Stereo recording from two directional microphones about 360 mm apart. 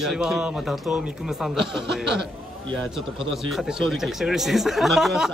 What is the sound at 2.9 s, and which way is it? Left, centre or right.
Speech, centre.